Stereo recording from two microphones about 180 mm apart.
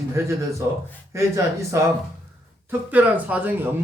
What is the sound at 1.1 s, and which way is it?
Speech, 15° right (ahead or behind).